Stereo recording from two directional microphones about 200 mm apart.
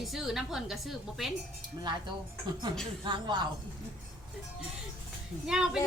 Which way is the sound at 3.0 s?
20° right (ahead or behind).